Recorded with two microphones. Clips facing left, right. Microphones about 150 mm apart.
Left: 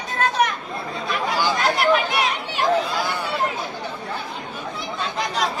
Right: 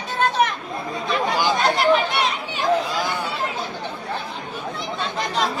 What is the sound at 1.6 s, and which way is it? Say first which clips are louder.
Chatter: right 1 dB; centre (ahead or behind).